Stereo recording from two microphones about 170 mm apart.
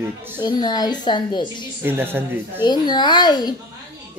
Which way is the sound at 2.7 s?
25° left (ahead or behind).